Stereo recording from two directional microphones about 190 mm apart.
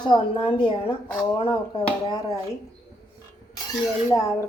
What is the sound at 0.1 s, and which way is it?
Speech, 25° left (ahead or behind).